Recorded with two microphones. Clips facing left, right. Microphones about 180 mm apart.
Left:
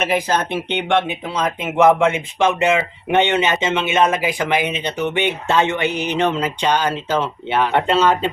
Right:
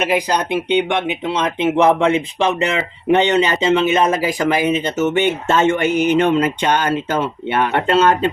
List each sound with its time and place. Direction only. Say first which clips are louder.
0.0 s speech: right 1 dB; 15° right (ahead or behind); by 8.3 s 50° right (ahead or behind)